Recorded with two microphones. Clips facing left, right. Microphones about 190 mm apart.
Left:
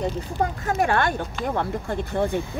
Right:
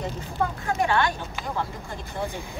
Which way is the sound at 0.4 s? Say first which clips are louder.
Left 2 dB; 50° left (ahead or behind).